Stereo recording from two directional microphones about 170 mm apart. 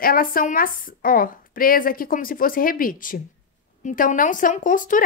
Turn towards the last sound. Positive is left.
turn(degrees=50)  # may be behind; listen again after turning